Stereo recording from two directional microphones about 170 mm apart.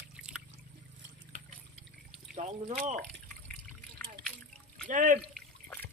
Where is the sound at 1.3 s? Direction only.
45° right (ahead or behind).